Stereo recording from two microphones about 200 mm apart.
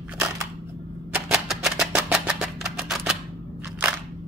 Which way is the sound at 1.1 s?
5° right (ahead or behind).